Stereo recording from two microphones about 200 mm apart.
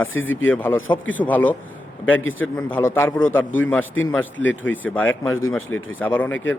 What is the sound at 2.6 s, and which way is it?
Speech, 10° left (ahead or behind).